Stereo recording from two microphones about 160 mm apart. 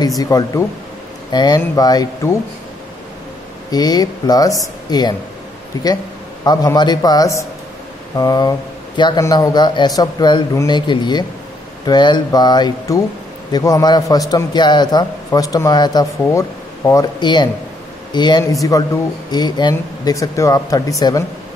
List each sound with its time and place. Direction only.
0.2 s speech: 20° left (ahead or behind)
3.7 s speech: 25° left (ahead or behind)
6.4 s speech: 25° left (ahead or behind)